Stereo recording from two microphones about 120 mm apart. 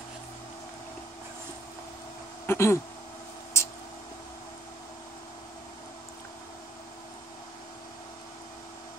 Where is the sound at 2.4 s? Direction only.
20° left (ahead or behind).